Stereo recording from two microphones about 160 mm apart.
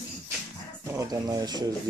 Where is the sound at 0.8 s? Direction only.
20° right (ahead or behind).